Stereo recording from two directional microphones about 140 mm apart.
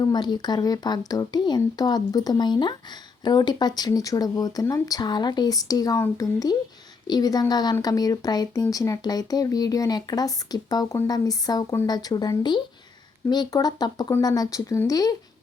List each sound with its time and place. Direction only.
0.0 s speech: 30° left (ahead or behind)